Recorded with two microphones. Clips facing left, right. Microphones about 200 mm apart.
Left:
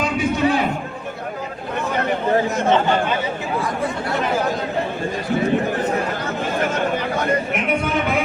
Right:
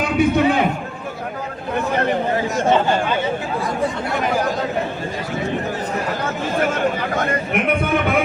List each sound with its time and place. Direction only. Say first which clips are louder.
0.0 s music: right 4 dB; 60° right (ahead or behind)
7.5 s speech: right 2 dB; 55° right (ahead or behind)